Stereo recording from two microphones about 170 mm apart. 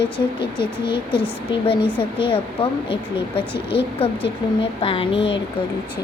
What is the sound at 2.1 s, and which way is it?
Speech, 30° left (ahead or behind).